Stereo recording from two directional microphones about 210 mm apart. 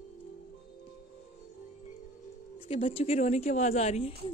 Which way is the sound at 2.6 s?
25° left (ahead or behind).